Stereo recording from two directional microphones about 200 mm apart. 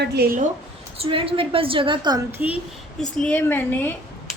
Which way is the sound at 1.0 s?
25° right (ahead or behind).